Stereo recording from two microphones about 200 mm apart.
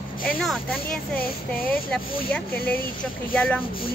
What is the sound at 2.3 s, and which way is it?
Speech, 5° left (ahead or behind).